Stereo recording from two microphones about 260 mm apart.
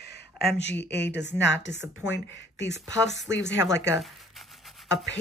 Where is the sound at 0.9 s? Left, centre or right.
Left.